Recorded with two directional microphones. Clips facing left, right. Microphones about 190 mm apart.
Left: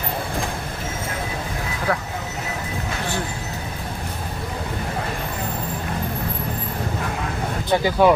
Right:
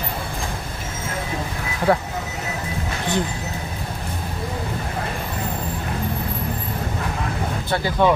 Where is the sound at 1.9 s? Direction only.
25° right (ahead or behind).